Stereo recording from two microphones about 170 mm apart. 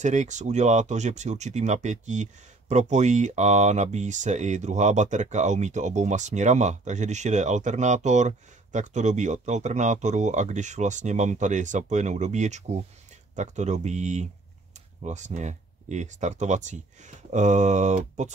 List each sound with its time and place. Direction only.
0.0 s speech: 45° right (ahead or behind)